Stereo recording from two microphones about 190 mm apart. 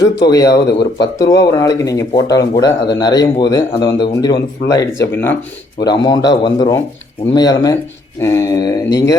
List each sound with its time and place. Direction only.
0.4 s speech: 60° left (ahead or behind)
1.2 s speech: 15° left (ahead or behind)